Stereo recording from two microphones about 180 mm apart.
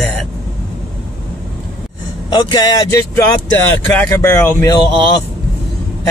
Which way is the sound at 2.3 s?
25° left (ahead or behind).